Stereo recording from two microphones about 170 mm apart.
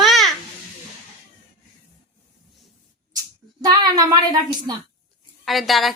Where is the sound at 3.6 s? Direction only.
25° right (ahead or behind).